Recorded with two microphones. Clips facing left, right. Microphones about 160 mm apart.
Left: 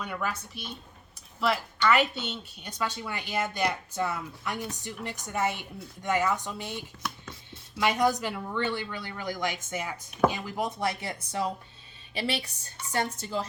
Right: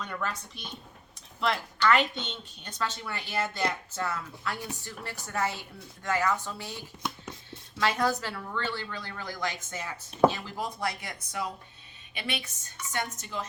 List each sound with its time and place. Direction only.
0.0 s a woman's voice: 10° left (ahead or behind); by 13.5 s 35° left (ahead or behind)